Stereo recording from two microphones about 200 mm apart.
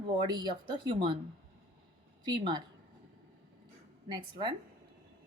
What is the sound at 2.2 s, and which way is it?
Speech, 25° right (ahead or behind).